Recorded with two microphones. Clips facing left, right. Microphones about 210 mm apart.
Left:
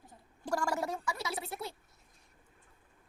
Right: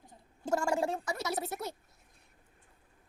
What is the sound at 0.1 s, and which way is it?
A woman's voice, 25° right (ahead or behind).